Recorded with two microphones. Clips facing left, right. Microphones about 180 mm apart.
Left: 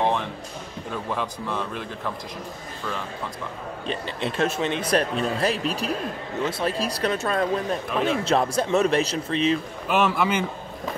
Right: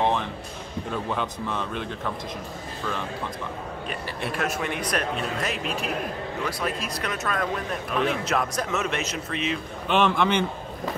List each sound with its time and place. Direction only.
0.0 s music: centre (ahead or behind)
1.1 s speech: centre (ahead or behind)
3.8 s speech: 25° left (ahead or behind)
9.8 s speech: 5° left (ahead or behind)